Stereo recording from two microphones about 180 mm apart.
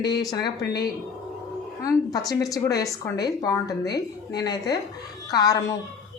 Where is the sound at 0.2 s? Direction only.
20° left (ahead or behind).